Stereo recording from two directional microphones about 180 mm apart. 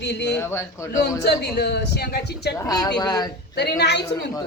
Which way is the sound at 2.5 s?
20° left (ahead or behind).